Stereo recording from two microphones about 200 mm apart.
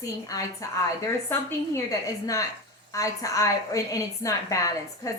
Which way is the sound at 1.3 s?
10° left (ahead or behind).